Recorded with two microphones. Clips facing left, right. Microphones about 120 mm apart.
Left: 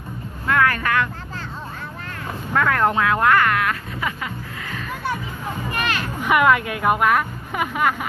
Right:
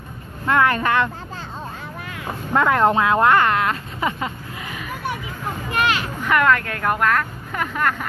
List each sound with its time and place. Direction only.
0.5 s vehicle: 25° right (ahead or behind)
2.5 s speech: 20° right (ahead or behind)
5.7 s speech: 20° right (ahead or behind)
6.2 s a woman's voice: 10° left (ahead or behind)